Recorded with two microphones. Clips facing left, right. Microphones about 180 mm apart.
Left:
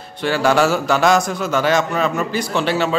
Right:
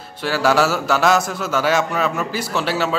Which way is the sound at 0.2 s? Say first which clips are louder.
Left 1 dB; 5° right (ahead or behind).